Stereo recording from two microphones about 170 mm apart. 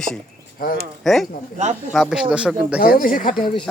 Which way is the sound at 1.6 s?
45° right (ahead or behind).